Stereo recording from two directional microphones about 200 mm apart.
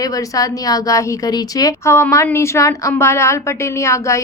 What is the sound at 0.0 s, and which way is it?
A woman's voice, 15° left (ahead or behind).